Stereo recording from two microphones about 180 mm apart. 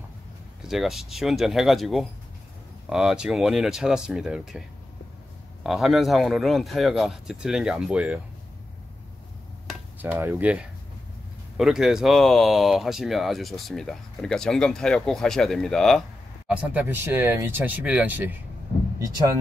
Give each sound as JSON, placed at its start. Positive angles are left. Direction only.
{"t": 0.7, "sound": "speech", "side_deg": 0}
{"t": 9.7, "sound": "speech", "side_deg": -10}